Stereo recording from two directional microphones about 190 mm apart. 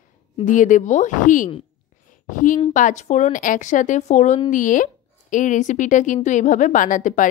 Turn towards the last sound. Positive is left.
turn(degrees=40)  # may be behind; listen again after turning